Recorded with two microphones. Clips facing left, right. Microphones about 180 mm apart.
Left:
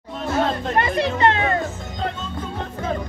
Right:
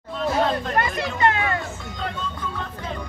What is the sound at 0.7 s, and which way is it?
Music, 25° left (ahead or behind).